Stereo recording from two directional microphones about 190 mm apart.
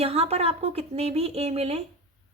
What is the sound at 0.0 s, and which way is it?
A woman's voice, 30° right (ahead or behind).